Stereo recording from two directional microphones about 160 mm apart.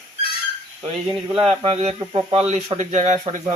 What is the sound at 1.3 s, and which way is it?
Speech, 35° right (ahead or behind).